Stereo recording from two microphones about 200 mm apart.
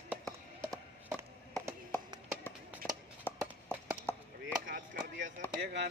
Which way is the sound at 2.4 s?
5° left (ahead or behind).